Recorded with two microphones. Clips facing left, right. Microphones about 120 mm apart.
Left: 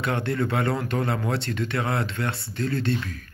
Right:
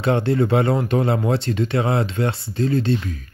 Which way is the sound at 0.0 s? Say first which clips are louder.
Right 7 dB; 25° right (ahead or behind).